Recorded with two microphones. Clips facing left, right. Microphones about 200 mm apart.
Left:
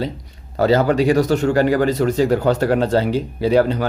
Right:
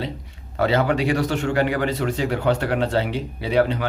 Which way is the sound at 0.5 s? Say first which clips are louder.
Left 5 dB; 40° left (ahead or behind).